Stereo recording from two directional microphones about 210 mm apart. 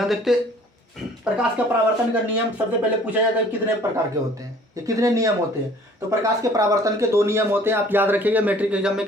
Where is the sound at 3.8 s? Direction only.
15° right (ahead or behind).